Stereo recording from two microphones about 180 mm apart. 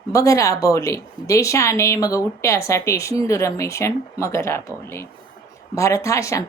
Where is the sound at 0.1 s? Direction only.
20° left (ahead or behind).